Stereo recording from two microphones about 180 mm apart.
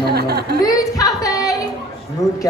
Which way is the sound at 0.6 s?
20° left (ahead or behind).